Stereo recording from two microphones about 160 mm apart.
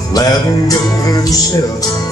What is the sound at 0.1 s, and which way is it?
Music, 20° left (ahead or behind).